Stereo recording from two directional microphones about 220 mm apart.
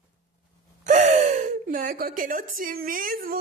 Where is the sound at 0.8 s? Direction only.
35° right (ahead or behind).